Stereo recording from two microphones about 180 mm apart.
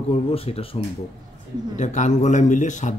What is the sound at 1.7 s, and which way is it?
Speech, 40° left (ahead or behind).